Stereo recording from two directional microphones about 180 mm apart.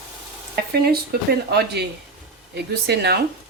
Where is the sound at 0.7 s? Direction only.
60° right (ahead or behind).